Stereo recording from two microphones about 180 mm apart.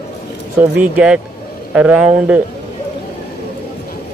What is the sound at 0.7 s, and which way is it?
Speech, 5° right (ahead or behind).